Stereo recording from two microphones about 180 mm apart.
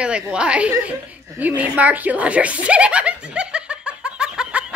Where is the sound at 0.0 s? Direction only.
5° right (ahead or behind).